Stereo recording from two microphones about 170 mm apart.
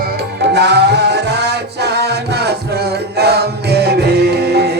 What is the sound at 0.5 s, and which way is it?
Music, 85° right.